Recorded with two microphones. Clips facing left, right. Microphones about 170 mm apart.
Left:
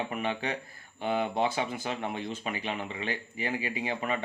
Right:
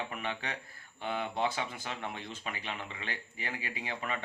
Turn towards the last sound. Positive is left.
turn(degrees=20)  # may be behind; listen again after turning